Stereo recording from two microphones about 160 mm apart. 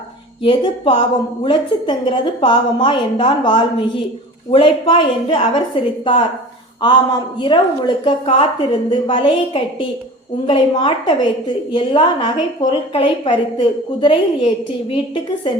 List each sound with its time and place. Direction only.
0.4 s a woman's voice: 35° left (ahead or behind)
15.4 s a woman's voice: 30° left (ahead or behind)